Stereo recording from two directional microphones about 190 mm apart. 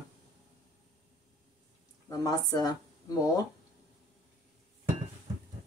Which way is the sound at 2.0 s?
20° left (ahead or behind).